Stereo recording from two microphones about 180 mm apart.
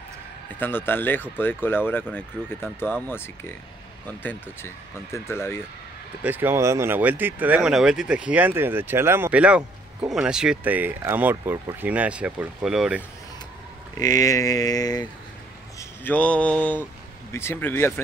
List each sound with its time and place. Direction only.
0.6 s speech: 10° left (ahead or behind)
6.2 s speech: 10° right (ahead or behind)
13.9 s speech: 20° left (ahead or behind)
15.8 s a sound: 10° left (ahead or behind)
17.3 s speech: 15° left (ahead or behind)